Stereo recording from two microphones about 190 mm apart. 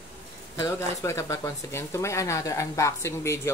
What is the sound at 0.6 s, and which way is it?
Speech, 15° left (ahead or behind).